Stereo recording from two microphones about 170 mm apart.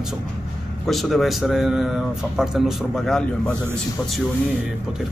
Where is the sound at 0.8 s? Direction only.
Centre (ahead or behind).